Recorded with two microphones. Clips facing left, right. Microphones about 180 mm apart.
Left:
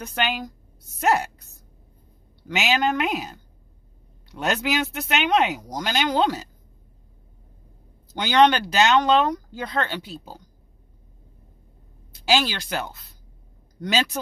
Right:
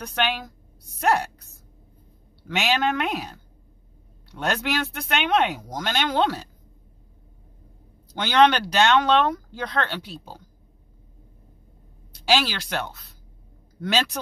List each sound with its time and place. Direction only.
0.0 s a woman's voice: centre (ahead or behind)
8.1 s speech: centre (ahead or behind)
12.2 s speech: centre (ahead or behind)